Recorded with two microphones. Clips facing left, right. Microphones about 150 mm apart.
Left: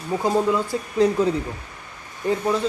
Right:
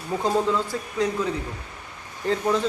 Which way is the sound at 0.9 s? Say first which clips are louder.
Left 6 dB; 30° left (ahead or behind).